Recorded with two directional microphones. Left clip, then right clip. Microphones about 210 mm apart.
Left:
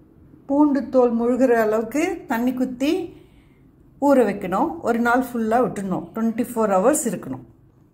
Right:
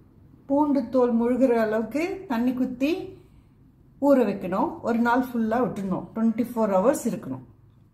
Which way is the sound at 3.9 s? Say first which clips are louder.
Left 3 dB; 15° left (ahead or behind).